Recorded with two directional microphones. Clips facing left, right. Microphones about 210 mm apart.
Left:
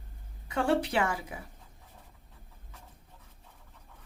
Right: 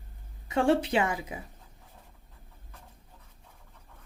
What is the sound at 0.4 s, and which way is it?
Speech, 25° right (ahead or behind).